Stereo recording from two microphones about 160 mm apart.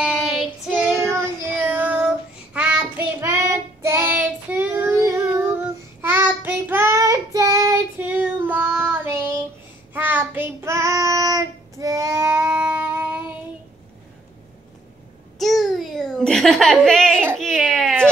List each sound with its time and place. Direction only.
0.0 s child singing: 5° right (ahead or behind); by 7.8 s 20° right (ahead or behind)
8.0 s child singing: 10° right (ahead or behind)
15.3 s a sound: centre (ahead or behind)
17.4 s baby cry: 5° left (ahead or behind)